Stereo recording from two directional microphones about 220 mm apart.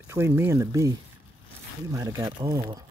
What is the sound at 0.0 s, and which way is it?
Speech, 10° right (ahead or behind).